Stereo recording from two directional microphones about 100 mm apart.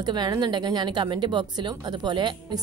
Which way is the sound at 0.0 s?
45° right (ahead or behind).